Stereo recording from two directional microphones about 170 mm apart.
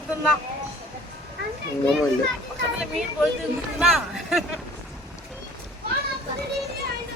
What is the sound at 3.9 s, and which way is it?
Speech, centre (ahead or behind).